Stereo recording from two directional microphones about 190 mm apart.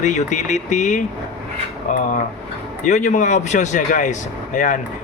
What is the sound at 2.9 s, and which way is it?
Speech, 40° left (ahead or behind).